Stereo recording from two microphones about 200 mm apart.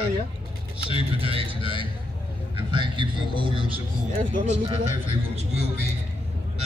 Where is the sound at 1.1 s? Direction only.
25° right (ahead or behind).